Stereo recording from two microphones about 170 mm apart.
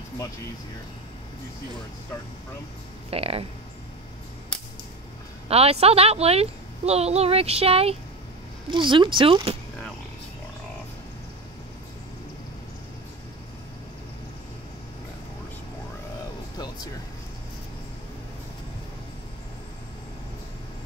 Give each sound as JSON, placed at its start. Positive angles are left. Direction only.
{"t": 3.1, "sound": "a woman's voice", "side_deg": -35}
{"t": 5.5, "sound": "a woman's voice", "side_deg": -35}
{"t": 16.5, "sound": "music", "side_deg": 25}